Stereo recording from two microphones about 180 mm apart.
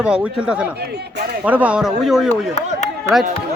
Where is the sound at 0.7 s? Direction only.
65° right (ahead or behind).